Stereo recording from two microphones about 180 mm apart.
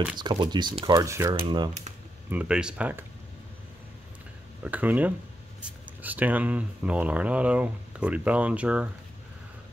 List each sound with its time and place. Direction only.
0.2 s speech: 25° right (ahead or behind)
2.2 s speech: 5° right (ahead or behind)
4.6 s speech: 10° right (ahead or behind)